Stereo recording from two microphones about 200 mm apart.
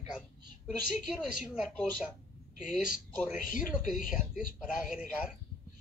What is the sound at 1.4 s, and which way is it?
Speech, 5° right (ahead or behind).